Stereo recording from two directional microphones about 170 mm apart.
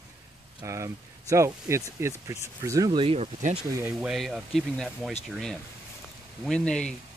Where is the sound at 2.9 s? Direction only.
35° right (ahead or behind).